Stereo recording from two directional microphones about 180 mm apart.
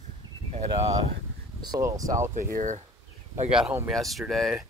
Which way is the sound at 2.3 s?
45° right (ahead or behind).